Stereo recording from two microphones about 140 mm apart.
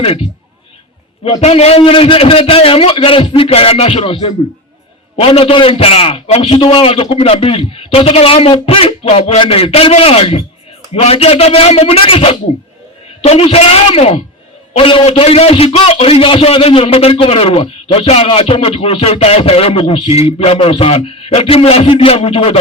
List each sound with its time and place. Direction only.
0.0 s a man's voice: 45° left (ahead or behind)
1.4 s a man's voice: 50° left (ahead or behind)